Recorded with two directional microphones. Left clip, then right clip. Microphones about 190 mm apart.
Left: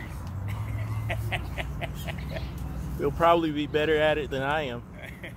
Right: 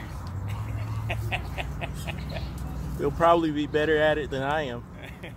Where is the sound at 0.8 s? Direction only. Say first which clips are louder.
Even; 50° right (ahead or behind).